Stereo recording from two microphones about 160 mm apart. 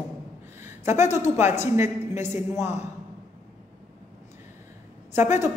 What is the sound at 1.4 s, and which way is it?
A woman's voice, 15° right (ahead or behind).